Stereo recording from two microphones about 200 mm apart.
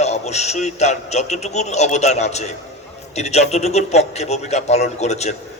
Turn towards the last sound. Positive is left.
turn(degrees=35)  # may be behind; listen again after turning